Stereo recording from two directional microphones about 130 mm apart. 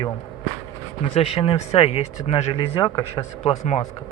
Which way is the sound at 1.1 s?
45° left (ahead or behind).